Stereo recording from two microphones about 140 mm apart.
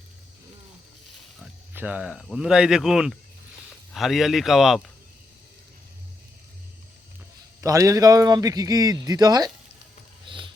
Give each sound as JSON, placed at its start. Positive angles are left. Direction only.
{"t": 1.4, "sound": "speech", "side_deg": -10}
{"t": 7.6, "sound": "speech", "side_deg": -25}
{"t": 10.2, "sound": "a sound", "side_deg": -35}